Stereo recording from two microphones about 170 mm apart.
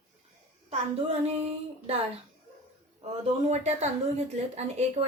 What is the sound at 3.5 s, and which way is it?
Speech, 40° right (ahead or behind).